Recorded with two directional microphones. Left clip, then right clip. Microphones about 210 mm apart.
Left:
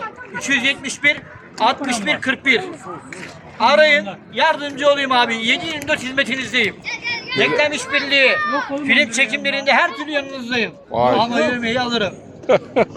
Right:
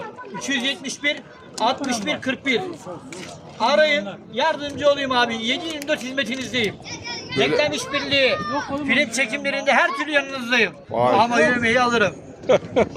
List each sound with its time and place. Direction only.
0.4 s a man's voice: 10° right (ahead or behind)
3.6 s a man's voice: 5° right (ahead or behind)
6.8 s children playing: 20° left (ahead or behind)
7.3 s a man's voice: 5° right (ahead or behind)
8.4 s speech: 15° left (ahead or behind)
8.7 s a man's voice: 5° right (ahead or behind)
9.5 s a man's voice: 5° left (ahead or behind)